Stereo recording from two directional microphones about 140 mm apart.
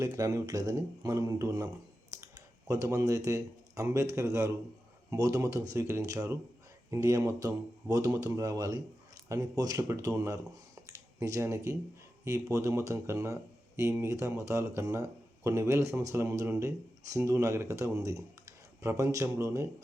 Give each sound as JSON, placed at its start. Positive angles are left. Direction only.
{"t": 0.0, "sound": "speech", "side_deg": -25}